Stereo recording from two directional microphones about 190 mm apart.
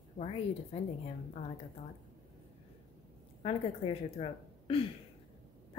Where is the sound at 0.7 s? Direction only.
30° left (ahead or behind).